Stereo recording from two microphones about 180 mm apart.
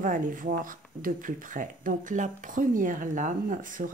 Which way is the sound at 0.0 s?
50° right (ahead or behind).